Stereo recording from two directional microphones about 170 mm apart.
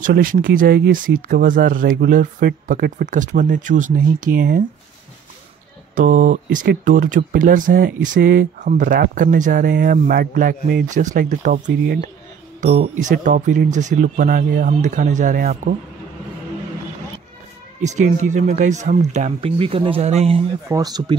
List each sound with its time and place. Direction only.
0.0 s speech: 55° right (ahead or behind)
0.6 s speech: 65° right (ahead or behind)
5.9 s speech: 50° right (ahead or behind)
11.6 s speech: 70° right (ahead or behind)
12.5 s a sound: 40° right (ahead or behind)
13.2 s speech: 50° right (ahead or behind)
17.8 s speech: 45° right (ahead or behind)
20.6 s speech: 20° right (ahead or behind)